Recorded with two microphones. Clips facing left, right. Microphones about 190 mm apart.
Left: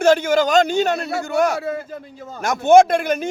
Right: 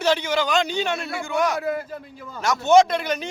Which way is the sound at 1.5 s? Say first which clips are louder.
Left 1 dB; 30° left (ahead or behind).